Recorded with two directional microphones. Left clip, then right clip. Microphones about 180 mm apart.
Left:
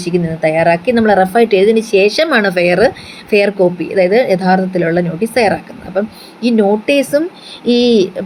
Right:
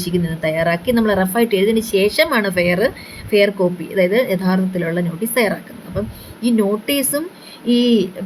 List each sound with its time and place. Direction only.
0.0 s a woman's voice: 10° left (ahead or behind)